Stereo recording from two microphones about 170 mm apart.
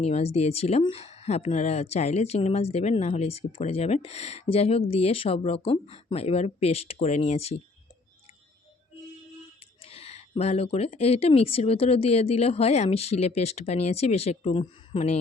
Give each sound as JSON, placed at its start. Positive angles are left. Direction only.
{"t": 0.0, "sound": "speech", "side_deg": 35}
{"t": 9.8, "sound": "speech", "side_deg": 35}